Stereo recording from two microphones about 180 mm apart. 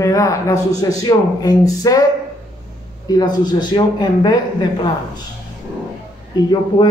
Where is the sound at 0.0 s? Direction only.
15° left (ahead or behind).